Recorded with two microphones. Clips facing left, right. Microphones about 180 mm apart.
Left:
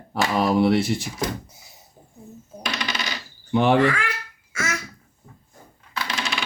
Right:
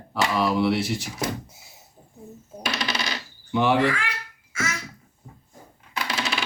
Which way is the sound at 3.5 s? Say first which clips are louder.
Left 3 dB; 50° left (ahead or behind).